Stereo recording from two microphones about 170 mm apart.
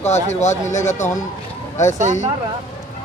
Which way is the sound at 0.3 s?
45° left (ahead or behind).